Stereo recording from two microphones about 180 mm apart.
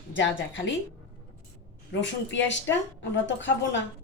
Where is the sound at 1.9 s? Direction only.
90° left.